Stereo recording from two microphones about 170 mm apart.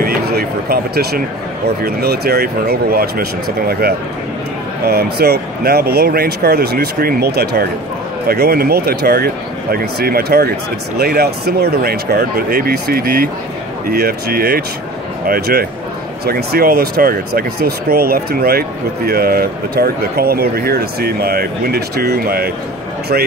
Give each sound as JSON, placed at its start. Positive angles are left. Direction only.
{"t": 0.0, "sound": "speech", "side_deg": -65}